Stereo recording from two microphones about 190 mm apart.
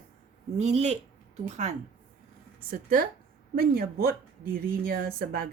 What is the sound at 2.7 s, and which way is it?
A woman's voice, 50° right (ahead or behind).